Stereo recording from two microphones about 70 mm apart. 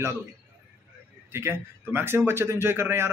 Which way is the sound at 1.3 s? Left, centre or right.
Right.